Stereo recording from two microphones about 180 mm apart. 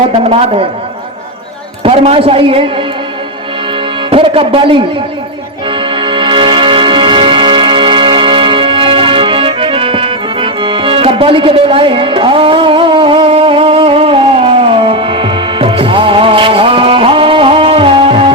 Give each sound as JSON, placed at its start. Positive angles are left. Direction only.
{"t": 0.3, "sound": "a man's voice", "side_deg": -35}
{"t": 1.8, "sound": "a man's voice", "side_deg": -30}
{"t": 4.1, "sound": "a man's voice", "side_deg": -30}
{"t": 5.8, "sound": "music", "side_deg": -30}